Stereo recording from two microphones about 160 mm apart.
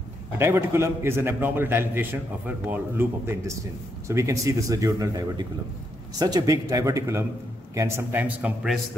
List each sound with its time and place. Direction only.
0.4 s a man's voice: 15° right (ahead or behind)